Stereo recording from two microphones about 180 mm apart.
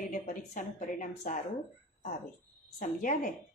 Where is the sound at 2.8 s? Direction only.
50° left (ahead or behind).